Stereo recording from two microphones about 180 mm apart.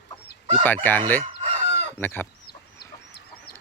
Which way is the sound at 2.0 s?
10° left (ahead or behind).